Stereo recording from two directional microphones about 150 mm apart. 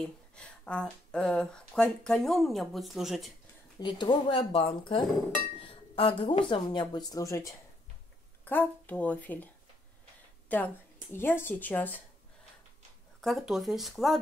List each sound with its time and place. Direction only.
0.0 s speech: 5° left (ahead or behind)
3.8 s a woman's voice: 30° left (ahead or behind); by 9.5 s 10° left (ahead or behind)
11.1 s a woman's voice: 15° left (ahead or behind)
13.2 s speech: centre (ahead or behind)